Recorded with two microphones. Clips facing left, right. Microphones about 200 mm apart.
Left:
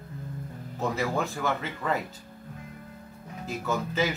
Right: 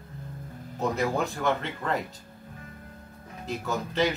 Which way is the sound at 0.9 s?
Centre (ahead or behind).